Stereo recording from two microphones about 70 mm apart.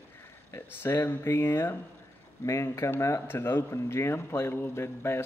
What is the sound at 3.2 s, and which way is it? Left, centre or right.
A man's voice, left.